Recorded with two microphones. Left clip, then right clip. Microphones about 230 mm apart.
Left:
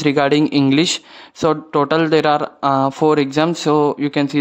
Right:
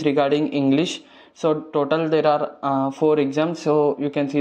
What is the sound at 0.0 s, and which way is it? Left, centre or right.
Speech, left.